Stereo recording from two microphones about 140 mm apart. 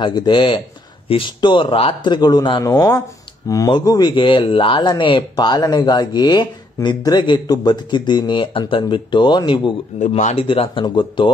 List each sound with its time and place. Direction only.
0.0 s speech: 35° left (ahead or behind)
9.9 s speech: 60° left (ahead or behind)
10.4 s speech: 40° left (ahead or behind)